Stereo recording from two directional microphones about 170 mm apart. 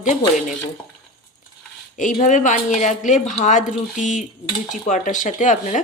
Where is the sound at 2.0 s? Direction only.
45° left (ahead or behind).